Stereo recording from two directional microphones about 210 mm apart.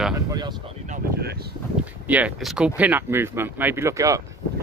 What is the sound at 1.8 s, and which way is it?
Speech, 5° right (ahead or behind).